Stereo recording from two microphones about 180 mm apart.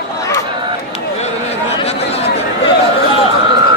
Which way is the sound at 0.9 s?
35° left (ahead or behind).